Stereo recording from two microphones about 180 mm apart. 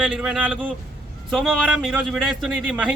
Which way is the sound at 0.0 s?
5° right (ahead or behind).